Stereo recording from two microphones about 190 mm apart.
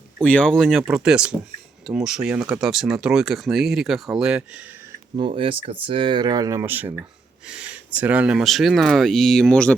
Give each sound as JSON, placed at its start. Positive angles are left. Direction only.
{"t": 0.2, "sound": "speech", "side_deg": 5}
{"t": 5.1, "sound": "speech", "side_deg": -30}